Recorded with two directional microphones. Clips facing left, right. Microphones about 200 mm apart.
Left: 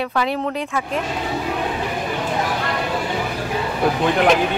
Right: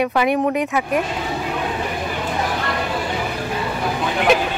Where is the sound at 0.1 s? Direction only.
15° right (ahead or behind).